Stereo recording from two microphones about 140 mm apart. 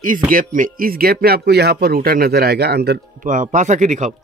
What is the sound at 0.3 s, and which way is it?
Speech, 80° right.